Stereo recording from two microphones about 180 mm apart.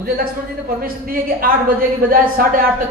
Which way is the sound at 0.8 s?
50° right (ahead or behind).